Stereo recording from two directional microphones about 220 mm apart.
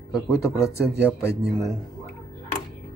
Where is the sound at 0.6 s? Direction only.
10° left (ahead or behind).